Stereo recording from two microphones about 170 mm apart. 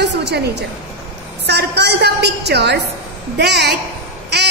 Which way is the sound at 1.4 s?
75° right (ahead or behind).